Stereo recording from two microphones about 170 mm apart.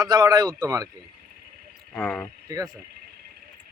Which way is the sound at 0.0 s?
25° right (ahead or behind).